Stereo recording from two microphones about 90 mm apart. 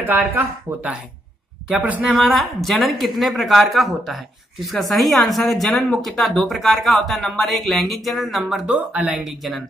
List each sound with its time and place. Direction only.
0.0 s speech: 20° right (ahead or behind)
2.0 s a woman's voice: centre (ahead or behind)
8.6 s speech: 15° right (ahead or behind)
9.3 s a woman's voice: centre (ahead or behind)